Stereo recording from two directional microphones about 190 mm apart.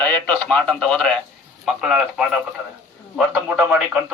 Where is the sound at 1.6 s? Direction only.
5° right (ahead or behind).